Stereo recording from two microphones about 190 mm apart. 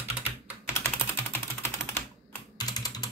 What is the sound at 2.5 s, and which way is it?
Computer keyboard, 20° left (ahead or behind).